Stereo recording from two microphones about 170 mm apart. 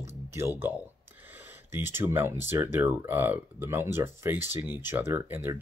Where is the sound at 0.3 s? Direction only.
15° right (ahead or behind).